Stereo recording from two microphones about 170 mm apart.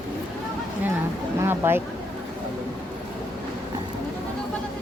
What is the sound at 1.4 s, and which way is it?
Speech, 15° right (ahead or behind).